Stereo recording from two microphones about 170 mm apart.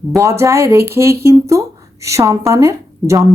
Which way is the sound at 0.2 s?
15° right (ahead or behind).